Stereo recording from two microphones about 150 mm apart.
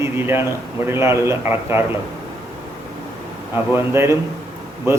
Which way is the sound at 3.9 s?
15° right (ahead or behind).